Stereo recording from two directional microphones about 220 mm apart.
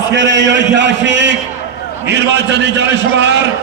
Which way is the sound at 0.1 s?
55° right (ahead or behind).